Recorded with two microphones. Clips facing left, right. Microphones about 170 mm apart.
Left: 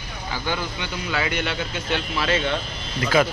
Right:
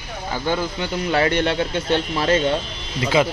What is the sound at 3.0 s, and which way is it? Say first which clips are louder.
Speech: right 1 dB; 20° right (ahead or behind).